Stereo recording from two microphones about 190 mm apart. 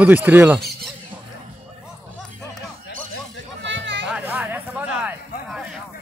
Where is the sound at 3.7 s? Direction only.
70° right (ahead or behind).